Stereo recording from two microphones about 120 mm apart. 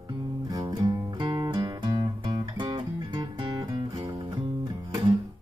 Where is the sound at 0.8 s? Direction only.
40° right (ahead or behind).